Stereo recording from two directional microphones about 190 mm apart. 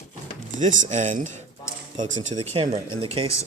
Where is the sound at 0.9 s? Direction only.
40° right (ahead or behind).